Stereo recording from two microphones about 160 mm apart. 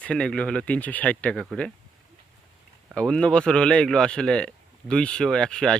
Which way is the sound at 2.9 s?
5° left (ahead or behind).